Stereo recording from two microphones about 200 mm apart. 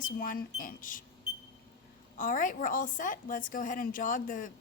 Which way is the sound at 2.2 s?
40° left (ahead or behind).